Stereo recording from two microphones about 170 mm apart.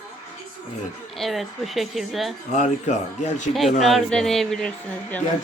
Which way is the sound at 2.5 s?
45° left (ahead or behind).